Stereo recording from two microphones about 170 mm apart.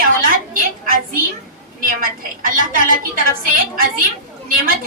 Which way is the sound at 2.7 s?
55° right (ahead or behind).